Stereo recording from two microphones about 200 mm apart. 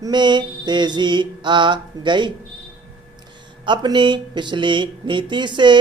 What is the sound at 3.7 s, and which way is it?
Speech, 25° right (ahead or behind).